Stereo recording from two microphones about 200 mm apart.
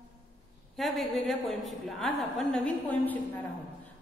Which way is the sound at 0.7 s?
Centre (ahead or behind).